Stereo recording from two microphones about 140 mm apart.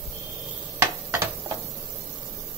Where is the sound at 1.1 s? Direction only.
20° right (ahead or behind).